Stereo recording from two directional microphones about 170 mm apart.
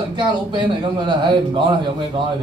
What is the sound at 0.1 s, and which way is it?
A man's voice, 30° right (ahead or behind).